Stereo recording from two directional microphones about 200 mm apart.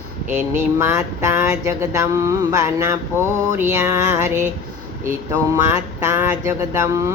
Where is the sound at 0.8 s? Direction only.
15° right (ahead or behind).